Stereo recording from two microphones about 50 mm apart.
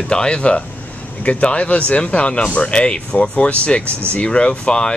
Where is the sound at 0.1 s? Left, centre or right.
Centre.